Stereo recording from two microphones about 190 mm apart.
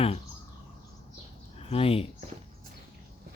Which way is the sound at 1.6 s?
30° left (ahead or behind).